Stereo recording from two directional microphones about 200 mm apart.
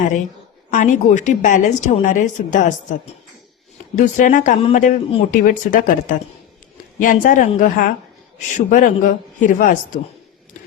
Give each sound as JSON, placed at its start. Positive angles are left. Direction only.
{"t": 0.7, "sound": "a woman's voice", "side_deg": 40}
{"t": 3.9, "sound": "a woman's voice", "side_deg": 40}